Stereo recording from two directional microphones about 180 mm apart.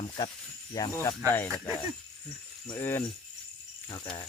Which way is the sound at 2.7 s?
15° left (ahead or behind).